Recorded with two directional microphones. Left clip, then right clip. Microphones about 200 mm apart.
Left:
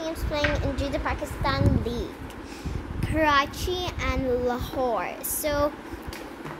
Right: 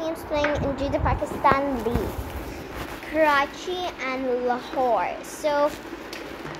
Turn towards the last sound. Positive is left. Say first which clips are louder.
# right 3 dB
turn(degrees=20)  # may be behind; listen again after turning